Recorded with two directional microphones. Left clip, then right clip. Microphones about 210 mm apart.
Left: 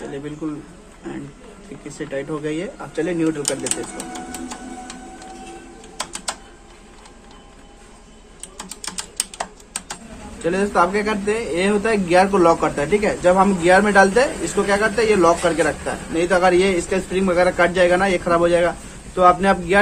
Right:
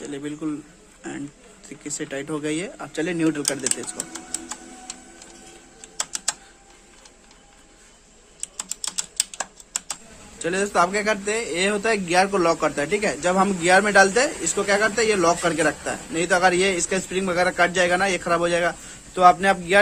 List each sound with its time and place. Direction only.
0.0 s a sound: 50° right (ahead or behind)
2.0 s speech: 45° right (ahead or behind)
10.4 s a man's voice: 35° right (ahead or behind)